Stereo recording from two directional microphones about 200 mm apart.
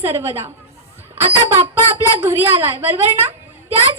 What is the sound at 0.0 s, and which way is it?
Speech, 10° right (ahead or behind).